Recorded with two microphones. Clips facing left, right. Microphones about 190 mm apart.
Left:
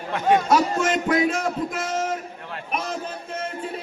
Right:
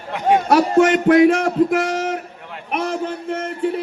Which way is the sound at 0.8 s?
65° right (ahead or behind).